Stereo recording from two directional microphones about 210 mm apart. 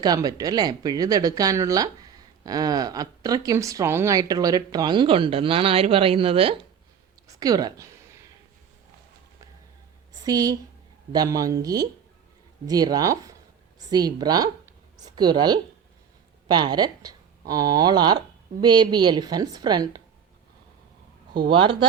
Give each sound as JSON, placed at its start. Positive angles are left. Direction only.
{"t": 0.0, "sound": "a woman's voice", "side_deg": -20}
{"t": 10.2, "sound": "a woman's voice", "side_deg": -15}
{"t": 21.5, "sound": "a woman's voice", "side_deg": -25}